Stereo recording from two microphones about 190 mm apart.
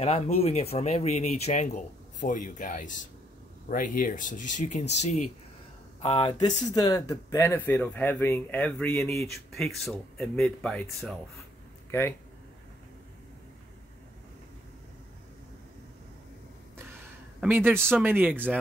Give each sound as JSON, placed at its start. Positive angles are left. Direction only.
{"t": 0.0, "sound": "speech", "side_deg": 30}
{"t": 17.4, "sound": "speech", "side_deg": -10}